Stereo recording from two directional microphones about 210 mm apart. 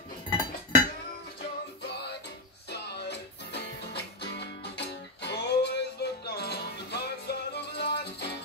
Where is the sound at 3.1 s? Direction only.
50° left (ahead or behind).